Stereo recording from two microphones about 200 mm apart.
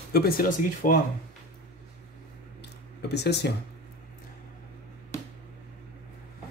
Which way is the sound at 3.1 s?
55° left (ahead or behind).